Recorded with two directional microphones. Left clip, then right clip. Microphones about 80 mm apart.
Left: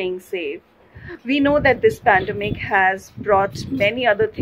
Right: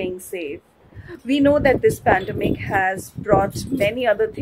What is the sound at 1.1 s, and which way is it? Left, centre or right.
A woman's voice, right.